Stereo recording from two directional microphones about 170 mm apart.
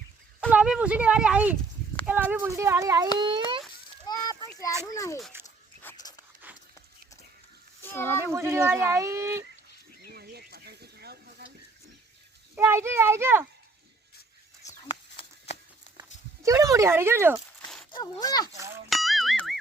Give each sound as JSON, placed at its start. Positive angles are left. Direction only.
{"t": 0.5, "sound": "a child's voice", "side_deg": -5}
{"t": 4.0, "sound": "children playing", "side_deg": 20}
{"t": 4.9, "sound": "a child's voice", "side_deg": 20}
{"t": 6.0, "sound": "dog", "side_deg": 20}
{"t": 7.8, "sound": "a sound", "side_deg": 10}
{"t": 8.3, "sound": "speech", "side_deg": -15}
{"t": 10.1, "sound": "a sound", "side_deg": -70}
{"t": 12.5, "sound": "speech", "side_deg": -15}
{"t": 14.8, "sound": "a sound", "side_deg": 30}
{"t": 16.0, "sound": "a sound", "side_deg": -20}
{"t": 17.9, "sound": "speech", "side_deg": 25}
{"t": 18.5, "sound": "speech", "side_deg": -15}
{"t": 18.9, "sound": "music", "side_deg": 0}